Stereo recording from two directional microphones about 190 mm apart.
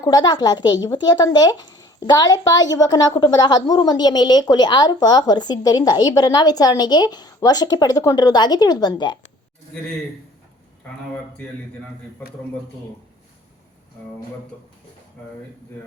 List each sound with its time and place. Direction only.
0.0 s speech: 20° left (ahead or behind)